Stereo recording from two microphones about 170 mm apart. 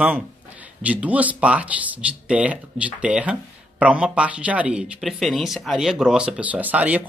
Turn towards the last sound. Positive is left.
turn(degrees=-10)  # may be behind; listen again after turning